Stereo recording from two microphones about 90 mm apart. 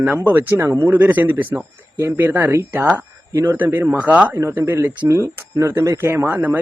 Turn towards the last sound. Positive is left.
turn(degrees=-20)  # may be behind; listen again after turning